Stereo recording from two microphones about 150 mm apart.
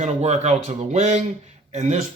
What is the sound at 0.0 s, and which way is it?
A man's voice, 50° right (ahead or behind).